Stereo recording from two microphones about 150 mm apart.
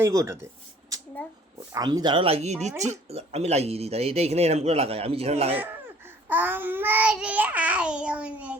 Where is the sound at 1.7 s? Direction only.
25° right (ahead or behind); by 5.5 s 40° right (ahead or behind).